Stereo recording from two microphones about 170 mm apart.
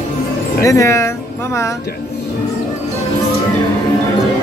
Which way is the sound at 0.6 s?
15° left (ahead or behind).